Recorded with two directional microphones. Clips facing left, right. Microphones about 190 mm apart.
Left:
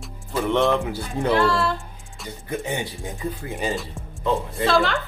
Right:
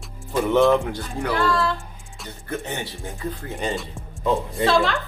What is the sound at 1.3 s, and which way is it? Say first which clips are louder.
Speech: left 3 dB; 25° left (ahead or behind).